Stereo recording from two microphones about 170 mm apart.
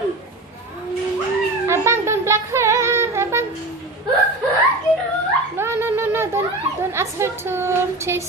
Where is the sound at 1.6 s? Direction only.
15° right (ahead or behind).